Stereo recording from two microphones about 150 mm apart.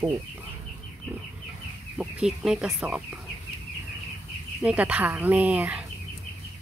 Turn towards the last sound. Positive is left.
turn(degrees=-10)  # may be behind; listen again after turning